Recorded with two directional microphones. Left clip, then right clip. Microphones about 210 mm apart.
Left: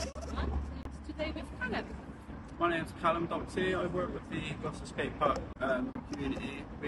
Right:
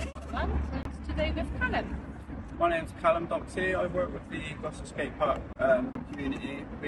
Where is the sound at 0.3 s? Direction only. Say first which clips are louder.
Right 7 dB; centre (ahead or behind).